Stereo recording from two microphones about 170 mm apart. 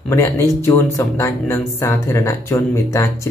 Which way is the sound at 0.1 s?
15° left (ahead or behind).